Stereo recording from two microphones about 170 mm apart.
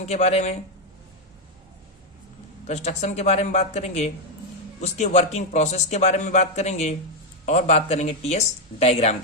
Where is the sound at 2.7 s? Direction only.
40° left (ahead or behind).